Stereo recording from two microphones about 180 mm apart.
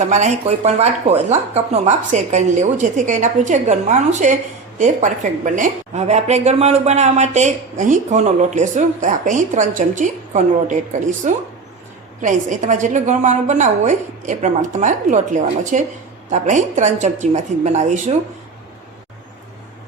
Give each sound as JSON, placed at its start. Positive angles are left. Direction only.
{"t": 0.0, "sound": "a woman's voice", "side_deg": -40}